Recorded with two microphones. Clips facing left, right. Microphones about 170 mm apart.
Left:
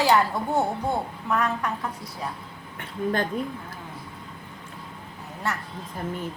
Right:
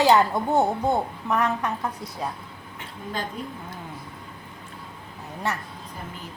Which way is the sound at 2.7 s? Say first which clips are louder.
Left 7 dB; 55° left (ahead or behind).